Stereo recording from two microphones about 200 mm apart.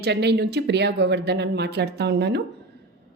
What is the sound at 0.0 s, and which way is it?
Speech, 55° right (ahead or behind).